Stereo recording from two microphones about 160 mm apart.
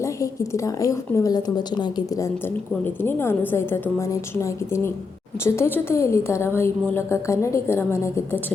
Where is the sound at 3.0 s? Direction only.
15° left (ahead or behind).